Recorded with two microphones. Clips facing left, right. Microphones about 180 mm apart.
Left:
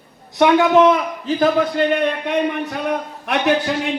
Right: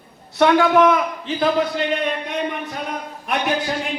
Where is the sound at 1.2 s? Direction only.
50° left (ahead or behind); by 3.5 s 70° left (ahead or behind).